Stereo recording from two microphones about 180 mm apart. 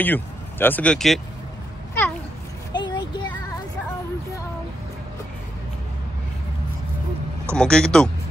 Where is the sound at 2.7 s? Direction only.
25° left (ahead or behind).